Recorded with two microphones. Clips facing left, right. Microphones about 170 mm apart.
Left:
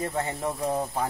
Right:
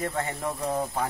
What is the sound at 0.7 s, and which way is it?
Speech, 10° left (ahead or behind).